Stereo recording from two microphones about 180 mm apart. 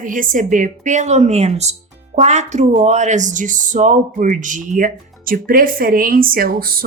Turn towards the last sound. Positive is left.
turn(degrees=-55)  # may be behind; listen again after turning